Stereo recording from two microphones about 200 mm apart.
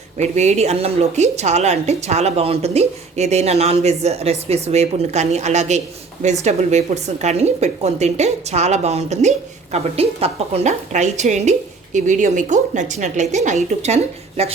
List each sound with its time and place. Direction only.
0.2 s a woman's voice: 35° right (ahead or behind)